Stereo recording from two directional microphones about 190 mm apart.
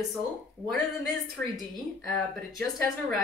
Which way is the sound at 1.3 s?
Centre (ahead or behind).